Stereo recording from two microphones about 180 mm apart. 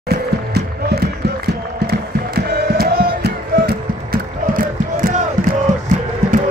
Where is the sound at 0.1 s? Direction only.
60° right (ahead or behind).